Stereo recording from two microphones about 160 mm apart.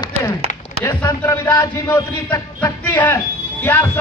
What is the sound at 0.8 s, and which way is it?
A man's voice, 15° left (ahead or behind).